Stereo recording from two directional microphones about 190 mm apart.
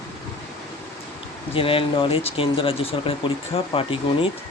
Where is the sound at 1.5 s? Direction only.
30° left (ahead or behind).